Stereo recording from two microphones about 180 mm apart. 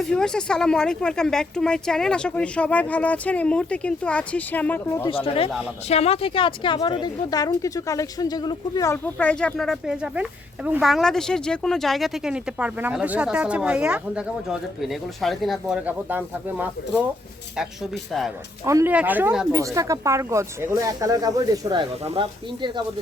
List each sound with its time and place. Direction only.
0.0 s speech: 5° left (ahead or behind)
5.0 s speech: 30° left (ahead or behind)
9.1 s speech: 5° left (ahead or behind)
18.6 s speech: 15° right (ahead or behind)
19.5 s speech: 20° right (ahead or behind)